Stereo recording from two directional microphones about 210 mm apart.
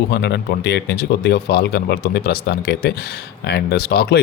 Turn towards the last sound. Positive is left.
turn(degrees=50)  # may be behind; listen again after turning